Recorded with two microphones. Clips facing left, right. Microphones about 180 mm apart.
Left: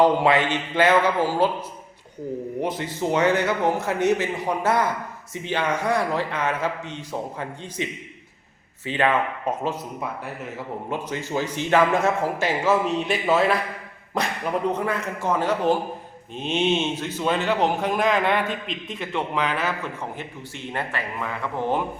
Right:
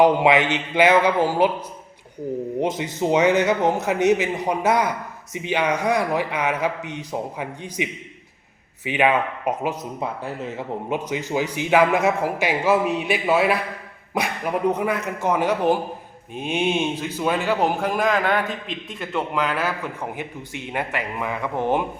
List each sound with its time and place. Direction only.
0.0 s speech: 15° right (ahead or behind)
2.6 s speech: 20° right (ahead or behind)
10.8 s speech: 15° right (ahead or behind)